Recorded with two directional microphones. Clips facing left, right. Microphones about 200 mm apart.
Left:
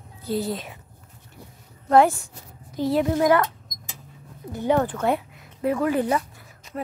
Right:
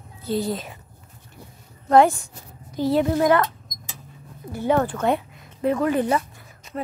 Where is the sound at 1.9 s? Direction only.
5° left (ahead or behind).